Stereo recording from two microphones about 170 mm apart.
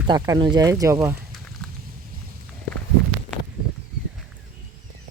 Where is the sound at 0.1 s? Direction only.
25° right (ahead or behind).